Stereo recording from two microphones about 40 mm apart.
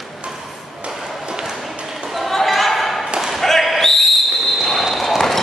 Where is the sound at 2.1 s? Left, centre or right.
Centre.